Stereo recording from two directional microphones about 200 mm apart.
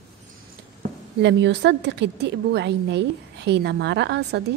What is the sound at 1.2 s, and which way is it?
A woman's voice, 60° right (ahead or behind).